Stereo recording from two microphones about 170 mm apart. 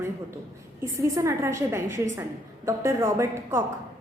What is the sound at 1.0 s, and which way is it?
A woman's voice, 20° right (ahead or behind).